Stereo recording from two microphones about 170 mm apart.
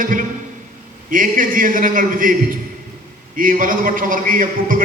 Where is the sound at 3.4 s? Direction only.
55° right (ahead or behind).